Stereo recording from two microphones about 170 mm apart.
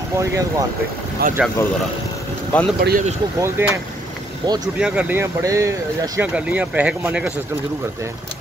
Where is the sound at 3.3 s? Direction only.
15° right (ahead or behind).